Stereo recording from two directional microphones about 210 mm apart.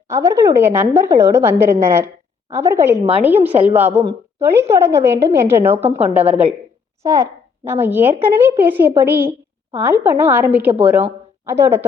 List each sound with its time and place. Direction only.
0.1 s a woman's voice: 15° right (ahead or behind)